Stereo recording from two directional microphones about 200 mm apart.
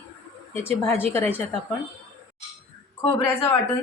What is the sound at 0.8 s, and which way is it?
Speech, 10° left (ahead or behind).